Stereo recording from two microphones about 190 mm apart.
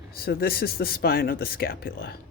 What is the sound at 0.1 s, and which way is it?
Speech, 55° left (ahead or behind).